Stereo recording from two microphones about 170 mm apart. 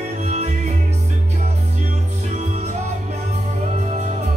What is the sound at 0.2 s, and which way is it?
Music, 40° right (ahead or behind).